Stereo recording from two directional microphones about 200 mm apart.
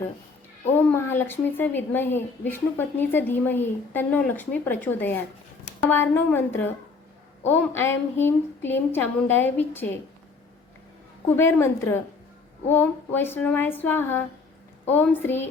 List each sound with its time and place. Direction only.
0.8 s a woman's voice: 10° left (ahead or behind)
11.3 s a woman's voice: 10° left (ahead or behind)